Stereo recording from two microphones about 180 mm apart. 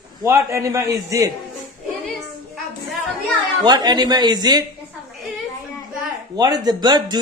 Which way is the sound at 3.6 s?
25° right (ahead or behind).